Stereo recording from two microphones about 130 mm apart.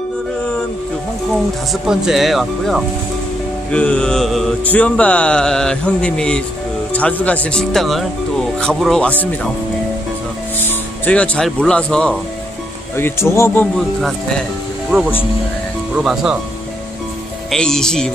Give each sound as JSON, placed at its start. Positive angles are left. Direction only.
{"t": 1.7, "sound": "speech", "side_deg": 0}
{"t": 4.6, "sound": "a sound", "side_deg": 10}
{"t": 10.6, "sound": "a sound", "side_deg": 10}
{"t": 12.9, "sound": "speech", "side_deg": 20}
{"t": 14.9, "sound": "speech", "side_deg": 0}
{"t": 17.5, "sound": "speech", "side_deg": 5}